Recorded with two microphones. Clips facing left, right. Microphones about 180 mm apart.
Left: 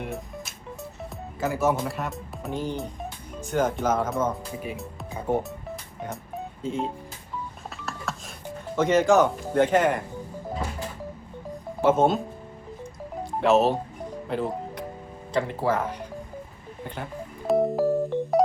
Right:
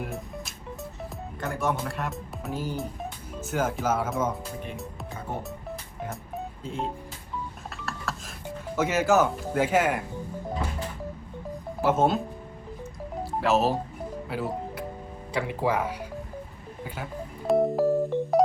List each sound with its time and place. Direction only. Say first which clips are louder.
0.0 s music: left 1 dB; centre (ahead or behind)
1.4 s speech: left 5 dB; 5° left (ahead or behind)
4.6 s speech: left 3 dB; 5° left (ahead or behind)
5.4 s music: left 2 dB; centre (ahead or behind)
7.8 s a sound: left 1 dB; centre (ahead or behind)
8.7 s speech: left 3 dB; 5° right (ahead or behind)
11.8 s speech: left 3 dB; centre (ahead or behind)
13.4 s speech: left 4 dB; centre (ahead or behind)
14.3 s music: left 4 dB; 5° right (ahead or behind)
15.3 s speech: left 2 dB; 10° right (ahead or behind)
16.8 s keyboard: left 1 dB; 5° right (ahead or behind)